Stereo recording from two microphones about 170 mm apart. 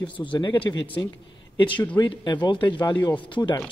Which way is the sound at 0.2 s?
30° left (ahead or behind).